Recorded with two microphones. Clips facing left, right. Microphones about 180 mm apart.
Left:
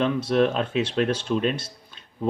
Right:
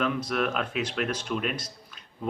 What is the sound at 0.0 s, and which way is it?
Speech, 30° left (ahead or behind).